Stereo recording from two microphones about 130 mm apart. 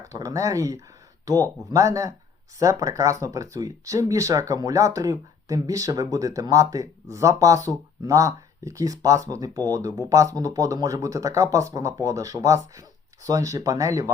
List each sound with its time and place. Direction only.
0.0 s speech: 25° right (ahead or behind)